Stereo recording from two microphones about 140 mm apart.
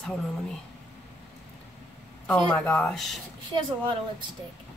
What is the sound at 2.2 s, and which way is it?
Speech, 10° left (ahead or behind).